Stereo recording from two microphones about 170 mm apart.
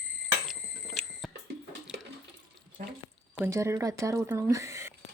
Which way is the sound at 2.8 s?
55° right (ahead or behind).